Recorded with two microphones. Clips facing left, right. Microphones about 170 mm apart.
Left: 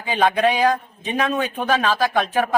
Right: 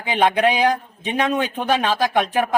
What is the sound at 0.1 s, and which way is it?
A man's voice, 15° right (ahead or behind).